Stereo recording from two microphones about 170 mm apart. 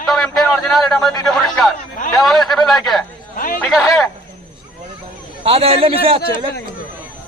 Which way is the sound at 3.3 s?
55° left (ahead or behind).